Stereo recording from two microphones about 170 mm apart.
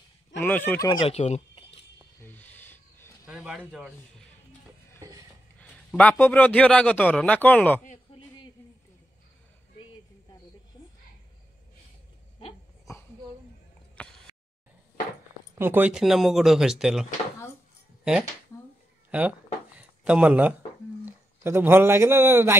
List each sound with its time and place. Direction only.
0.4 s a man's voice: 10° left (ahead or behind)
0.8 s speech: 35° left (ahead or behind)
2.2 s a sound: 10° left (ahead or behind)
3.3 s speech: 5° right (ahead or behind)
5.6 s a man's voice: 5° left (ahead or behind)
13.9 s a sound: 5° left (ahead or behind)
15.5 s speech: 10° right (ahead or behind)
19.0 s speech: 10° right (ahead or behind)